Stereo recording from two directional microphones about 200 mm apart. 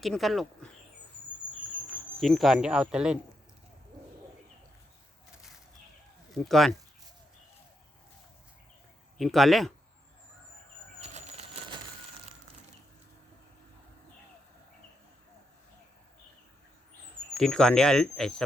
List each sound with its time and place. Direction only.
0.0 s speech: centre (ahead or behind)
2.2 s speech: centre (ahead or behind)
6.3 s speech: centre (ahead or behind)
9.1 s speech: centre (ahead or behind)
11.0 s a sound: 30° right (ahead or behind)
17.3 s speech: 5° left (ahead or behind)